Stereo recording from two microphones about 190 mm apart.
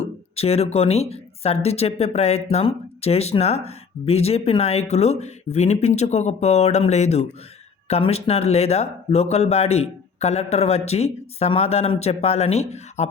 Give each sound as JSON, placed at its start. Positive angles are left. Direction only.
{"t": 0.3, "sound": "speech", "side_deg": 35}